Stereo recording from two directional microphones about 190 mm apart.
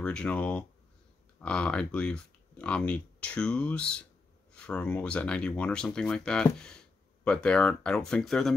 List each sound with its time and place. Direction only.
0.0 s speech: 5° left (ahead or behind)